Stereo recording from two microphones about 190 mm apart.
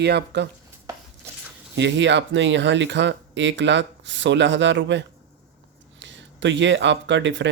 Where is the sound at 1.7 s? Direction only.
70° right (ahead or behind).